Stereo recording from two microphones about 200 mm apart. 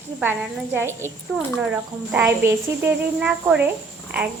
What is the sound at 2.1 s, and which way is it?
A woman's voice, 10° right (ahead or behind).